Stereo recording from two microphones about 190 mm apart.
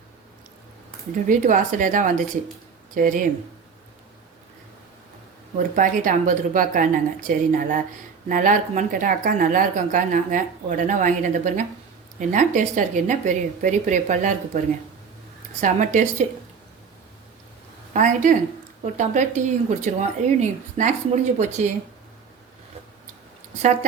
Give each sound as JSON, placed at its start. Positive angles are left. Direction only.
{"t": 1.3, "sound": "a woman's voice", "side_deg": -40}
{"t": 5.5, "sound": "a woman's voice", "side_deg": -45}
{"t": 15.6, "sound": "a woman's voice", "side_deg": -40}
{"t": 17.9, "sound": "a woman's voice", "side_deg": -40}